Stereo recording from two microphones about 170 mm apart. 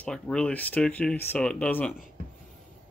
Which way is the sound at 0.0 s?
5° left (ahead or behind).